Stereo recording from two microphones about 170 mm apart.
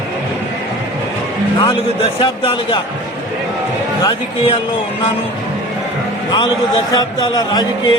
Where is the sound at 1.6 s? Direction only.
30° left (ahead or behind).